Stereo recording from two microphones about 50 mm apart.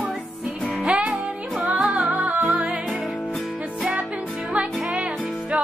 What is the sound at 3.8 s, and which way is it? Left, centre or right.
Music, centre.